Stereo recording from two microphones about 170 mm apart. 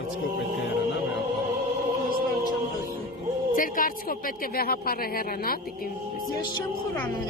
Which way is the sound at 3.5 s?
55° left (ahead or behind).